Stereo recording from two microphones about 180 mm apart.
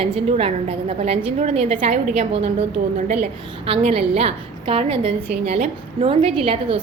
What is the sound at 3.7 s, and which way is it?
A woman's voice, 30° right (ahead or behind).